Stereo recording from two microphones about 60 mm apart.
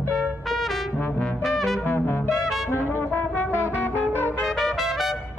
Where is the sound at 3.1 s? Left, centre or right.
Left.